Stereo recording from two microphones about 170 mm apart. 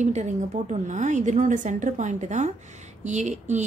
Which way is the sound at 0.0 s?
45° right (ahead or behind).